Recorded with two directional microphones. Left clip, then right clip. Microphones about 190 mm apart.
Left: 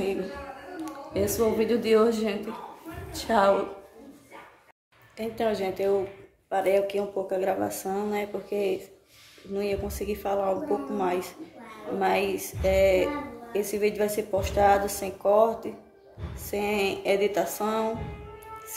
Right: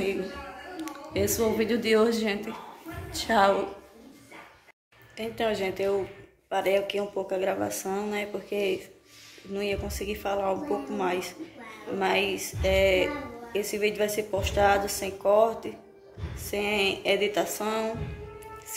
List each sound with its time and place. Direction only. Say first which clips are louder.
0.8 s a woman's voice: even; 5° left (ahead or behind)
5.1 s a woman's voice: left 1 dB; 10° left (ahead or behind)